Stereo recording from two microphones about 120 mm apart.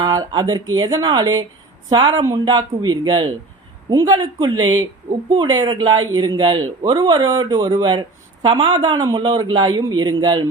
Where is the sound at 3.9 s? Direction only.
25° right (ahead or behind).